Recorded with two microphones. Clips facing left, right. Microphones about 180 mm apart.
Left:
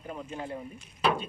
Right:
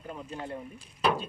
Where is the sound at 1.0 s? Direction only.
Centre (ahead or behind).